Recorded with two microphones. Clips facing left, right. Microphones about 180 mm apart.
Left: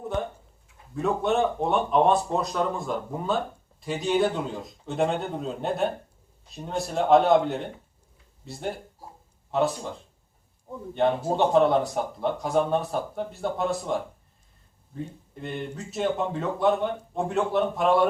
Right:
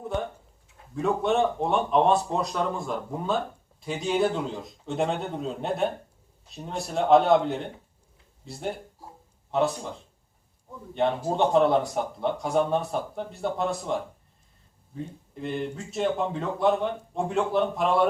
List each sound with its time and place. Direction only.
0.9 s speech: centre (ahead or behind)
10.9 s speech: centre (ahead or behind)